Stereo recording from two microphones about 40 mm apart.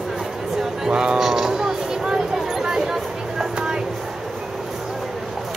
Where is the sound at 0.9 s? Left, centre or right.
Centre.